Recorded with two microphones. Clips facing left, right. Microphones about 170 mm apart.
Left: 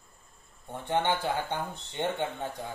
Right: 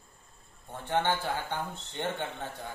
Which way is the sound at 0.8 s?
20° left (ahead or behind).